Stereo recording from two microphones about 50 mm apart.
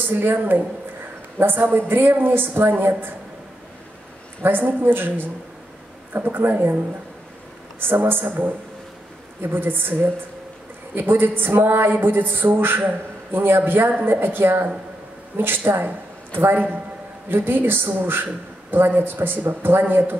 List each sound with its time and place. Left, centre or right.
0.0 s speech: right
4.4 s speech: right
7.8 s speech: right